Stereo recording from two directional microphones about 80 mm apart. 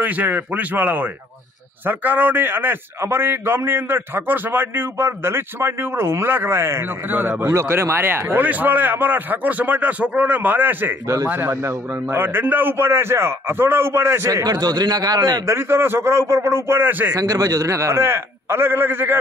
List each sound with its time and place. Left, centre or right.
0.0 s a man's voice: right
11.5 s a man's voice: right
11.9 s a man's voice: right
14.4 s a man's voice: right
15.4 s a man's voice: right
17.1 s a man's voice: right